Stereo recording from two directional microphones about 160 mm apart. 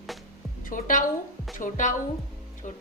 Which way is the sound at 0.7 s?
55° left (ahead or behind).